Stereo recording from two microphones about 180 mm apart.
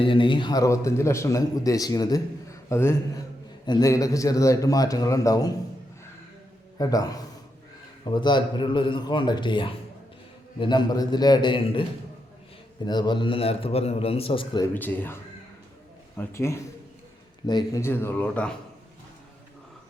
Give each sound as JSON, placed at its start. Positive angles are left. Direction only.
{"t": 0.0, "sound": "a man's voice", "side_deg": 30}
{"t": 6.7, "sound": "a man's voice", "side_deg": 20}
{"t": 14.7, "sound": "speech", "side_deg": 10}